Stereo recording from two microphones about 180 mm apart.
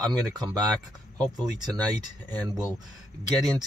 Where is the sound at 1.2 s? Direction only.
20° right (ahead or behind).